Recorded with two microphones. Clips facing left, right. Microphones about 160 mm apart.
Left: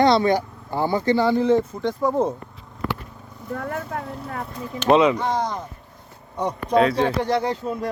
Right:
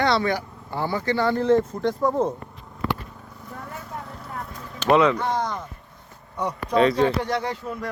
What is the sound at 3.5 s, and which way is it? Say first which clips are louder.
Speech: left 8 dB; 65° left (ahead or behind).